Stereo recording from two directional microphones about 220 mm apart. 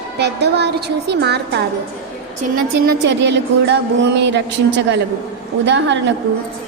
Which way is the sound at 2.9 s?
55° right (ahead or behind).